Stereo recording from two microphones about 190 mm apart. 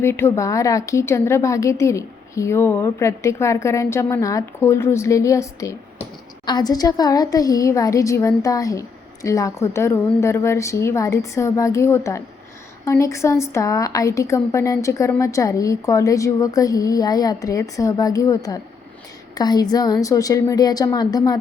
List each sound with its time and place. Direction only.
0.0 s a woman's voice: 15° left (ahead or behind)